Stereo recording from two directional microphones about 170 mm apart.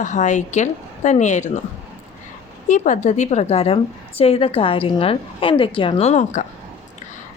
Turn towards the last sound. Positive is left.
turn(degrees=40)  # may be behind; listen again after turning